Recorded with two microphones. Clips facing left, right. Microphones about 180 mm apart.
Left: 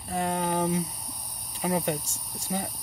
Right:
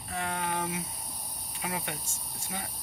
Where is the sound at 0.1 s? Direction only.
35° left (ahead or behind).